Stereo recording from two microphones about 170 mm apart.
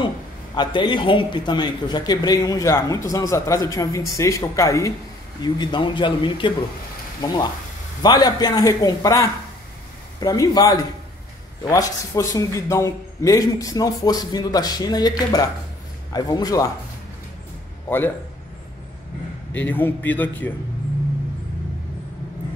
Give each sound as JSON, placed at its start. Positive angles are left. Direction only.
{"t": 0.6, "sound": "a man's voice", "side_deg": 25}
{"t": 8.0, "sound": "a man's voice", "side_deg": 25}
{"t": 10.2, "sound": "a man's voice", "side_deg": 20}
{"t": 17.8, "sound": "a man's voice", "side_deg": 10}
{"t": 19.5, "sound": "a man's voice", "side_deg": 10}